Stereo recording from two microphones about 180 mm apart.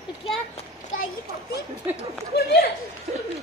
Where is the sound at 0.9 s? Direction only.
90° left.